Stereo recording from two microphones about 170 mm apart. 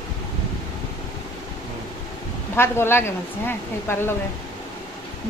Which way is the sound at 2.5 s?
15° left (ahead or behind).